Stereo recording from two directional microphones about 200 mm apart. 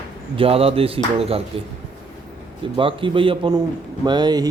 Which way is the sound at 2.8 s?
25° right (ahead or behind).